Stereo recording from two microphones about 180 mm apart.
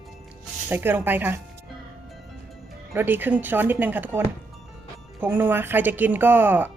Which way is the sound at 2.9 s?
10° right (ahead or behind).